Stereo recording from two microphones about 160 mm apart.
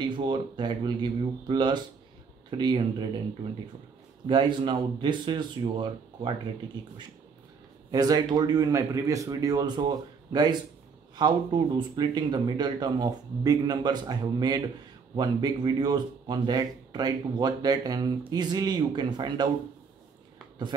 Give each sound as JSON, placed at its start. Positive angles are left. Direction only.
{"t": 0.0, "sound": "speech", "side_deg": -30}
{"t": 4.3, "sound": "speech", "side_deg": -30}
{"t": 7.9, "sound": "speech", "side_deg": -25}